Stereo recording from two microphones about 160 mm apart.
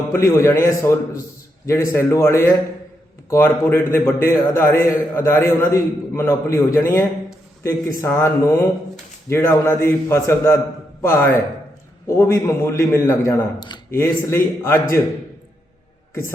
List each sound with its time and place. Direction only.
0.1 s a man's voice: 15° left (ahead or behind)